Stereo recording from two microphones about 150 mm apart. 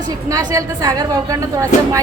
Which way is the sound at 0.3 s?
20° right (ahead or behind).